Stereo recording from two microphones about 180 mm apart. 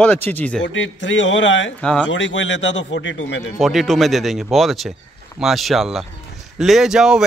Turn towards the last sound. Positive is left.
turn(degrees=-5)  # may be behind; listen again after turning